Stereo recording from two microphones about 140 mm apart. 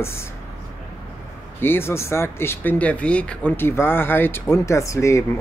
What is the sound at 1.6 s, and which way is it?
Speech, 15° left (ahead or behind).